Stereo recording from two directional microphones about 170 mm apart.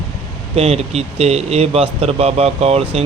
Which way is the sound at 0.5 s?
35° right (ahead or behind).